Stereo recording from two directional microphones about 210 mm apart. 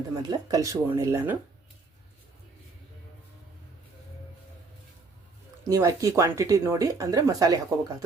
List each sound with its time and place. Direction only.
0.2 s speech: 20° right (ahead or behind)
5.6 s speech: 15° right (ahead or behind)